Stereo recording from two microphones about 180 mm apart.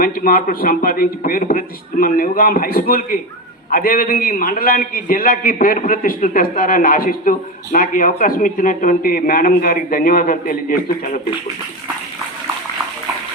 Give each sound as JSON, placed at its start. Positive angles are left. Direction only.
{"t": 0.0, "sound": "a man's voice", "side_deg": 50}